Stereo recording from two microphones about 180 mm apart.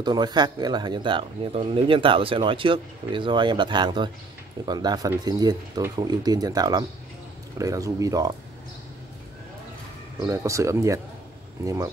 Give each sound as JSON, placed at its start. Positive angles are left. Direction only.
{"t": 0.0, "sound": "speech", "side_deg": -25}
{"t": 10.2, "sound": "speech", "side_deg": -15}